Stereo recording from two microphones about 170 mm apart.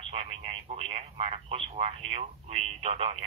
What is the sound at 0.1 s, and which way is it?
Speech, 35° right (ahead or behind).